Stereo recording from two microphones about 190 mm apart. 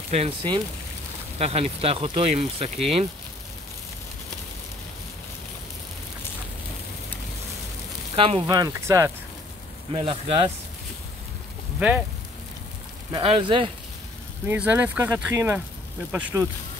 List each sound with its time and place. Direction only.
0.1 s speech: 30° right (ahead or behind)
8.2 s speech: 30° right (ahead or behind)
9.9 s speech: 30° right (ahead or behind)
13.1 s speech: 30° right (ahead or behind)
14.4 s speech: 10° right (ahead or behind)